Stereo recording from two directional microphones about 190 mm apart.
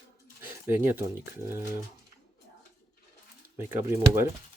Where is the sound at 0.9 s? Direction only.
15° right (ahead or behind).